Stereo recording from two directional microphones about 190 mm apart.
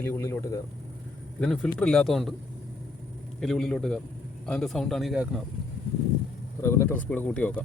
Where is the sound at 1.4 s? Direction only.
5° left (ahead or behind).